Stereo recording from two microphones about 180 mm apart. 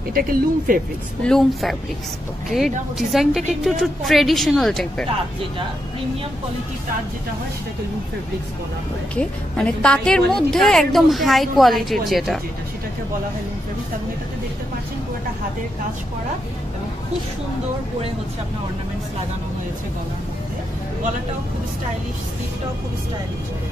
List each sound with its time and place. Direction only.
0.1 s speech: 55° right (ahead or behind)
1.2 s a woman's voice: centre (ahead or behind)
3.0 s a woman's voice: centre (ahead or behind)
9.1 s a woman's voice: 5° left (ahead or behind)